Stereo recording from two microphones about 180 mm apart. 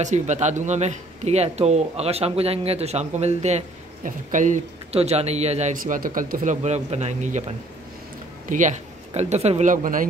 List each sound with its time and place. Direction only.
0.0 s speech: 40° right (ahead or behind)